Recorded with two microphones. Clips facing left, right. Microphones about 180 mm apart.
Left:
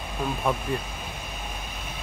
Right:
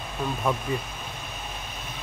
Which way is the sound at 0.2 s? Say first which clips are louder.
Left 1 dB; 10° left (ahead or behind).